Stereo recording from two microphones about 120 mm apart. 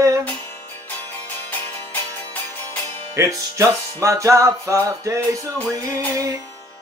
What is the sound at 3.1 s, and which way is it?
Music, 25° right (ahead or behind).